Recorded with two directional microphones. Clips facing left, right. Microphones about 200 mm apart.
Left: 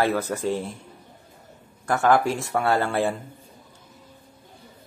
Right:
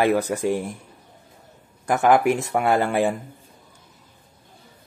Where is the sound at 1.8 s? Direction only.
15° right (ahead or behind).